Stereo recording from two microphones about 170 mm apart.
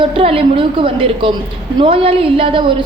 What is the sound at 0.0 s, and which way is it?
A woman's voice, 30° right (ahead or behind).